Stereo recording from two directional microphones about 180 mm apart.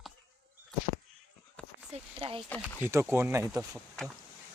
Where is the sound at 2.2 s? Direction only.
30° right (ahead or behind).